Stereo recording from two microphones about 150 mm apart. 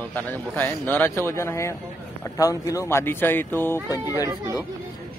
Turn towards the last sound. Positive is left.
turn(degrees=-20)  # may be behind; listen again after turning